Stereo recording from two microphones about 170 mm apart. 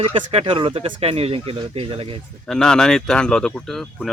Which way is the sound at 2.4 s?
5° left (ahead or behind).